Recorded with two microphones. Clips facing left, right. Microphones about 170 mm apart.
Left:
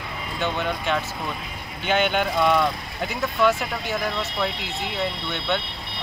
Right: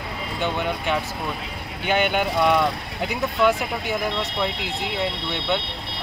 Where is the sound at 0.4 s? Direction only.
15° right (ahead or behind).